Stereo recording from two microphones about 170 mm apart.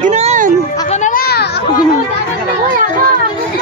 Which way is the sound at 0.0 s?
40° right (ahead or behind).